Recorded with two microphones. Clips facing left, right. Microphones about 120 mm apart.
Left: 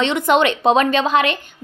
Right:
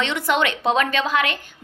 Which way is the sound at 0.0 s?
20° left (ahead or behind).